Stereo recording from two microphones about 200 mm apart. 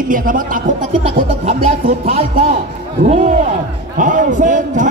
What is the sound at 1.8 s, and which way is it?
A man's voice, 45° right (ahead or behind).